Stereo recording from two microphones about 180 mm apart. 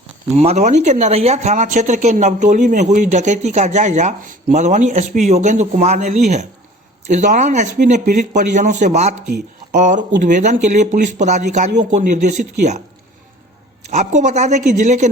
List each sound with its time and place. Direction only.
0.3 s speech: 35° right (ahead or behind)
13.8 s speech: 40° right (ahead or behind)